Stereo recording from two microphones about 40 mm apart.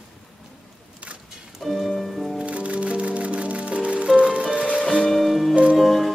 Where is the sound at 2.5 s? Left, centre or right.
Right.